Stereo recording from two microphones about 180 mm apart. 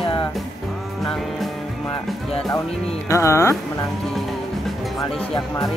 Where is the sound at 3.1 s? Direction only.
15° left (ahead or behind).